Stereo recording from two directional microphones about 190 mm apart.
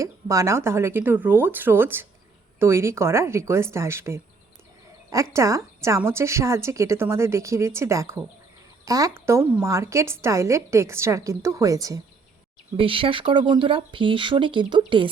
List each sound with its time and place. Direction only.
0.0 s a woman's voice: 15° right (ahead or behind)